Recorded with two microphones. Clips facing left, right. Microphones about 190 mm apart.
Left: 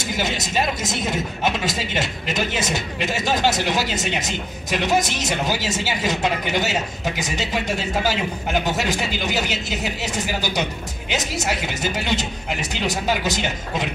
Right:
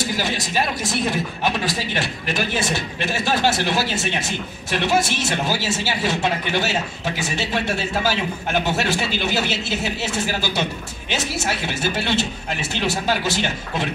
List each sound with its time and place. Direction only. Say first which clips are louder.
0.0 s speech: right 1 dB; 20° left (ahead or behind)